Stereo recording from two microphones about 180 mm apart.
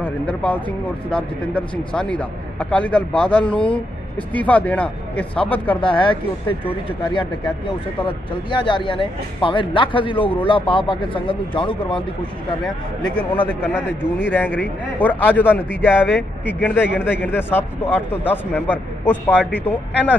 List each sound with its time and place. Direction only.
0.0 s speech: 5° left (ahead or behind)
5.8 s a man's voice: 30° left (ahead or behind)
12.6 s speech: 10° left (ahead or behind)